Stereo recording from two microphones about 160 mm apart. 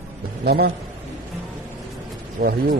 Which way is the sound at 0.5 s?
80° right.